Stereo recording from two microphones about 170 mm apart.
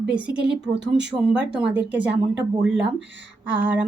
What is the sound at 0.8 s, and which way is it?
Speech, 90° right.